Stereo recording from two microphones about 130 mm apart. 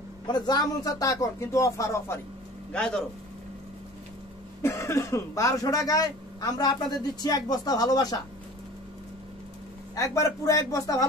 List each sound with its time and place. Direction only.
0.3 s speech: 30° left (ahead or behind)
2.7 s speech: 5° left (ahead or behind)
4.6 s speech: 20° left (ahead or behind)
9.9 s speech: 25° left (ahead or behind)